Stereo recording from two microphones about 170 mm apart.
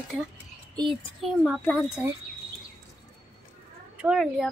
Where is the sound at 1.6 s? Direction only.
10° left (ahead or behind).